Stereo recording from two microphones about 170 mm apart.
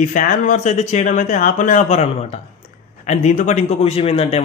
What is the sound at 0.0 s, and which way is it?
Speech, 50° left (ahead or behind).